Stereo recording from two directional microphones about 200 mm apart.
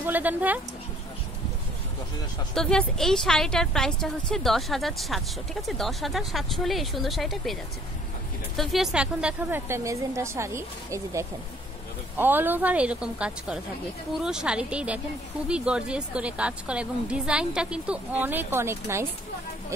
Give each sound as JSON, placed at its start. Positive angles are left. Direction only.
{"t": 0.0, "sound": "a woman's voice", "side_deg": -10}
{"t": 2.5, "sound": "a woman's voice", "side_deg": 5}
{"t": 8.5, "sound": "a woman's voice", "side_deg": 0}